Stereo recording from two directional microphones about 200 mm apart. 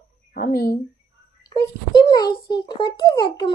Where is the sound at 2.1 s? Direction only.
20° left (ahead or behind).